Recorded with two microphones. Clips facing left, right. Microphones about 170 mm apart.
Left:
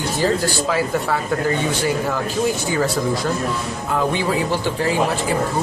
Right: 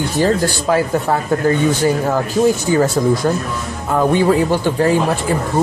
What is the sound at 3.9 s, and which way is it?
Speech, 50° right (ahead or behind).